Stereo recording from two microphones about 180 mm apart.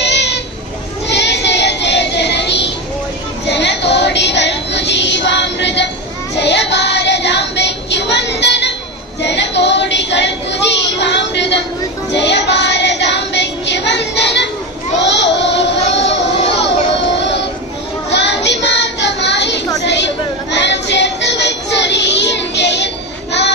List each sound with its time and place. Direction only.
0.0 s a sound: 70° left (ahead or behind)
1.0 s child singing: 70° left (ahead or behind)
18.1 s child singing: 75° left (ahead or behind)